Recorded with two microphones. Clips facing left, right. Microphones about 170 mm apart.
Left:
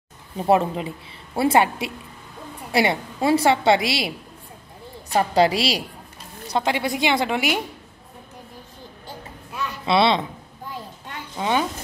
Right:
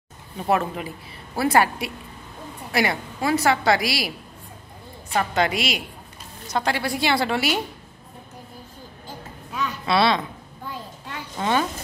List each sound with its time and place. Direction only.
0.5 s a woman's voice: 25° left (ahead or behind)
5.3 s a woman's voice: 35° left (ahead or behind)
6.6 s a woman's voice: 20° left (ahead or behind)
9.8 s a woman's voice: 20° left (ahead or behind)
11.3 s a woman's voice: 10° left (ahead or behind)